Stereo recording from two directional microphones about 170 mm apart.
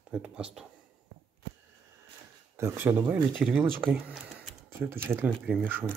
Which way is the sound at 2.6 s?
15° right (ahead or behind).